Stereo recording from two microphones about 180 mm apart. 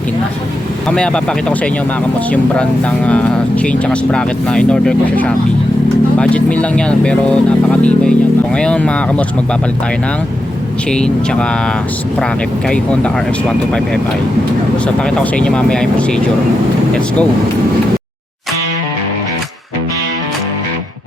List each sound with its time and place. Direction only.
0.9 s speech: 5° left (ahead or behind)
3.1 s speech: 5° left (ahead or behind)
10.9 s speech: 5° left (ahead or behind)
12.6 s speech: 5° left (ahead or behind)
15.0 s speech: 5° left (ahead or behind)